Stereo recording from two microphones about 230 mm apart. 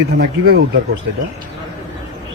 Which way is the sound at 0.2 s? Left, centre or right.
Right.